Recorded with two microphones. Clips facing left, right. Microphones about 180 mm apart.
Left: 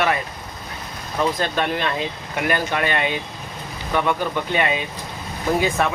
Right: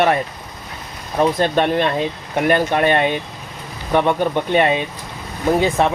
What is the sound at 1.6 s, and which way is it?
Speech, 50° right (ahead or behind).